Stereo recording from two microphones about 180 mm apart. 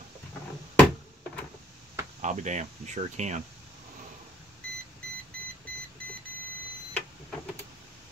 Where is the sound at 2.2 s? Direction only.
40° right (ahead or behind).